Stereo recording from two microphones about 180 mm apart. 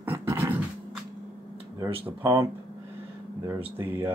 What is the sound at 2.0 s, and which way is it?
Speech, 15° right (ahead or behind).